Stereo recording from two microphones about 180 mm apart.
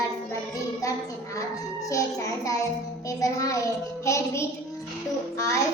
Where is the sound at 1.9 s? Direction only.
20° left (ahead or behind).